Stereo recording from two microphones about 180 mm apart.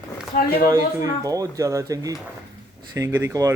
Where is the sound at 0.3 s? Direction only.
50° left (ahead or behind).